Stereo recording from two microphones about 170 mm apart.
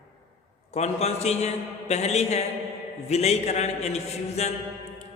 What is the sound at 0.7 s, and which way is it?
A man's voice, 40° left (ahead or behind).